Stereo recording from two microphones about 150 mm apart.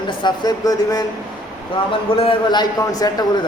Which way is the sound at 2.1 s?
35° left (ahead or behind).